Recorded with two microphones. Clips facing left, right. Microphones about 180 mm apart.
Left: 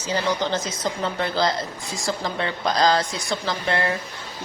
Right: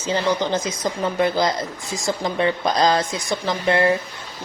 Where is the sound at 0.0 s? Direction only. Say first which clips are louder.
Right 3 dB; 20° right (ahead or behind).